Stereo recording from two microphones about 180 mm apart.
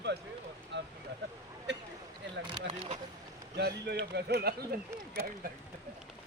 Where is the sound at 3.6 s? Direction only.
65° right (ahead or behind).